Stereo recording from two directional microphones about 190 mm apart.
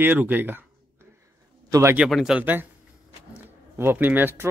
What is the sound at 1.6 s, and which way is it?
Speech, 15° right (ahead or behind).